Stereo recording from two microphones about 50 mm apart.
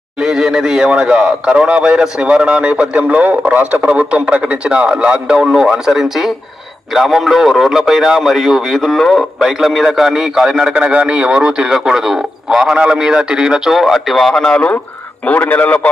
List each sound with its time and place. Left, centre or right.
0.2 s speech: centre
0.9 s a man's voice: right
10.7 s a man's voice: right
13.7 s a man's voice: centre
15.2 s a man's voice: left